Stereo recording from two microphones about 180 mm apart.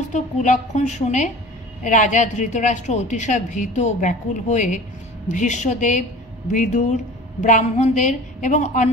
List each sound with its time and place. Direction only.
0.1 s a woman's voice: 40° left (ahead or behind)